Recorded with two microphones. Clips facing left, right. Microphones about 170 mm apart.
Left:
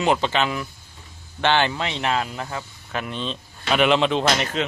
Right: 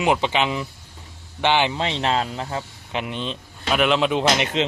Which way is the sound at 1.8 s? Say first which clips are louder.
Right 2 dB; 30° right (ahead or behind).